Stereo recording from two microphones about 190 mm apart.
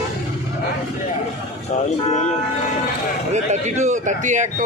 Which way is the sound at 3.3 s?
40° right (ahead or behind).